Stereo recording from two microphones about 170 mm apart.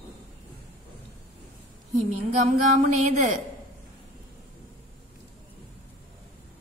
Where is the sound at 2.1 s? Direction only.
40° right (ahead or behind).